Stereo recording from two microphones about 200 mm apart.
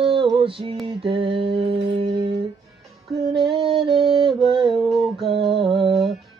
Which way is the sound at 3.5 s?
25° right (ahead or behind).